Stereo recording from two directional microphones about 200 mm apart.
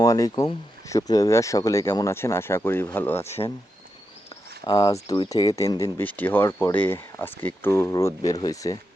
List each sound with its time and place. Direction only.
0.0 s speech: 15° left (ahead or behind)
3.2 s speech: 30° left (ahead or behind)
4.6 s speech: 15° left (ahead or behind)